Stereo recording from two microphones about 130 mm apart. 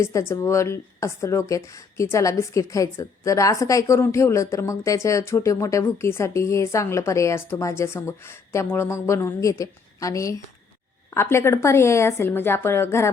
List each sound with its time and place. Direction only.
0.0 s a woman's voice: 20° left (ahead or behind)